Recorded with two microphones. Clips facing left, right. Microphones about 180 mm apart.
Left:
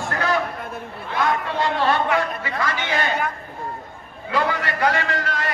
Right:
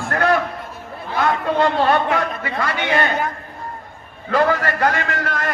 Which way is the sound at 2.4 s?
60° right (ahead or behind).